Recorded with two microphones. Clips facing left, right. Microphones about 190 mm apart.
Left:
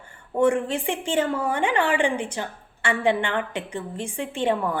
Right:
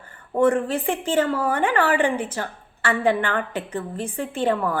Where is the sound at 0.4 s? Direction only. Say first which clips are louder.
Right 2 dB; 15° left (ahead or behind).